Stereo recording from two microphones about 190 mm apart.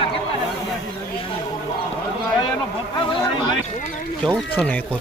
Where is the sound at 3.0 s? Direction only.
25° left (ahead or behind).